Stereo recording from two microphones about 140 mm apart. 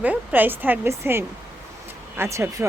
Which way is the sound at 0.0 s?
10° right (ahead or behind).